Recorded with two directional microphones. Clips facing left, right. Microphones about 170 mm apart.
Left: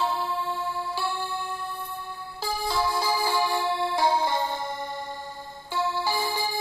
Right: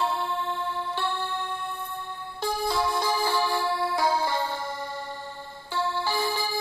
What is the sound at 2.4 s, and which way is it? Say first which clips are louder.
Music: right 1 dB; centre (ahead or behind).